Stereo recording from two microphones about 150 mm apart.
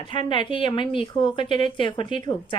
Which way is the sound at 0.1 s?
35° left (ahead or behind).